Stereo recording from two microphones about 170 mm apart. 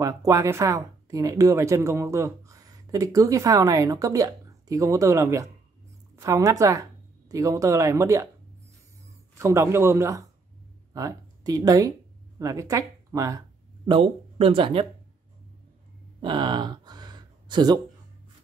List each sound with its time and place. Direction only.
0.0 s speech: 20° right (ahead or behind)
9.4 s a man's voice: 15° right (ahead or behind)
13.8 s speech: 30° right (ahead or behind)
16.2 s a sound: 30° right (ahead or behind)